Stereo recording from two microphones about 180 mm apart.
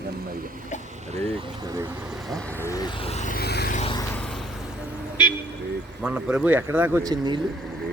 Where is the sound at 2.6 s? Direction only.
20° left (ahead or behind).